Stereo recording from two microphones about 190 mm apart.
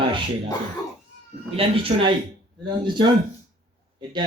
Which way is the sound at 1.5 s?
30° right (ahead or behind).